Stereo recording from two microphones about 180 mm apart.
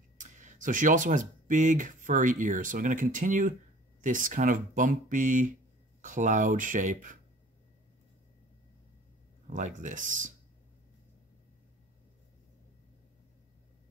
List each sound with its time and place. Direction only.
0.2 s speech: 45° right (ahead or behind)
9.5 s speech: 45° right (ahead or behind)